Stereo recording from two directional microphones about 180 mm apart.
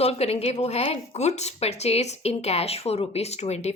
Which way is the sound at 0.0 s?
35° left (ahead or behind).